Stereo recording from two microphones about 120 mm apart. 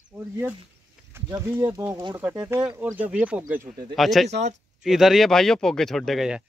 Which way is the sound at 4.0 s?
Centre (ahead or behind).